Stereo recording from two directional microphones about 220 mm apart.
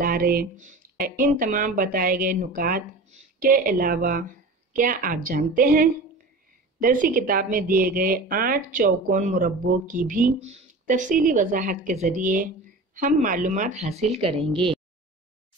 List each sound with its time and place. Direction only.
0.0 s speech: 40° right (ahead or behind); by 14.7 s 25° right (ahead or behind)